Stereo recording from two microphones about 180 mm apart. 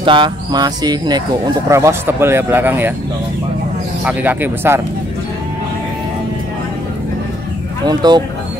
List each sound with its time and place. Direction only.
0.0 s speech: 25° right (ahead or behind); by 2.9 s 10° right (ahead or behind)
4.0 s speech: 10° right (ahead or behind)
7.8 s speech: 25° right (ahead or behind)